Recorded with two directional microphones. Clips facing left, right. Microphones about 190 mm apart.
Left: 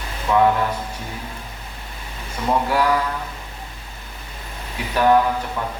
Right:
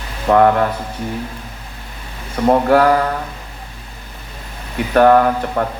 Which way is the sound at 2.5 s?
60° right (ahead or behind).